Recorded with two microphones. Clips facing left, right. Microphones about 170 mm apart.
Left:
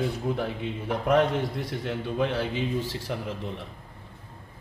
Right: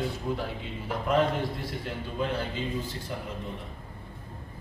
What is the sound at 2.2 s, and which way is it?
Speech, 90° left.